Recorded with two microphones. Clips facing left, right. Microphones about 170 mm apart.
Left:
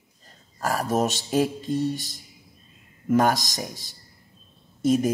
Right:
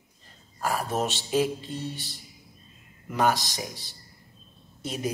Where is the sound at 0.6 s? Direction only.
40° left (ahead or behind).